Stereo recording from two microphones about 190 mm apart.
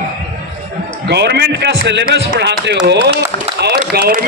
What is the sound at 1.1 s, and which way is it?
A man's voice, 60° right (ahead or behind).